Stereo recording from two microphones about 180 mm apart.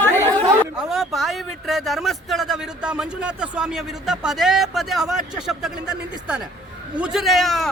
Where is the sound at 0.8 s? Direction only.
Centre (ahead or behind).